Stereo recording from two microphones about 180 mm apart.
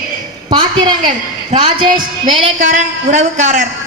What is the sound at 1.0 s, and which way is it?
A woman's voice, 40° right (ahead or behind).